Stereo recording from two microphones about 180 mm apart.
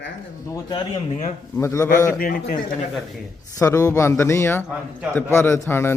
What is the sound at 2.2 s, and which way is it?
Speech, 55° left (ahead or behind).